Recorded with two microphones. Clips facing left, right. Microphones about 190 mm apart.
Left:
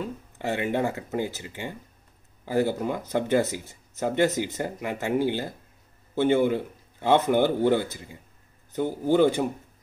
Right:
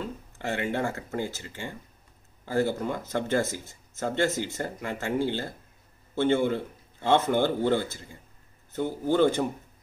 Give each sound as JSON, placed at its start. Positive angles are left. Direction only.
{"t": 0.0, "sound": "speech", "side_deg": 15}